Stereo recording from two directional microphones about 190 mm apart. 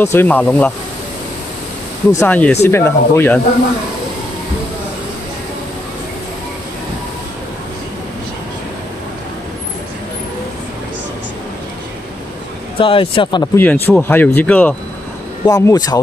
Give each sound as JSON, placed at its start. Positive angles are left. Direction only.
{"t": 0.0, "sound": "speech", "side_deg": 10}
{"t": 2.1, "sound": "speech", "side_deg": 10}
{"t": 12.7, "sound": "speech", "side_deg": 25}
{"t": 13.6, "sound": "speech", "side_deg": 10}
{"t": 15.4, "sound": "speech", "side_deg": 20}